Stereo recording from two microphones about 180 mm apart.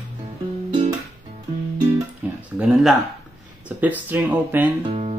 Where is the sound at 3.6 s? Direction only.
10° right (ahead or behind).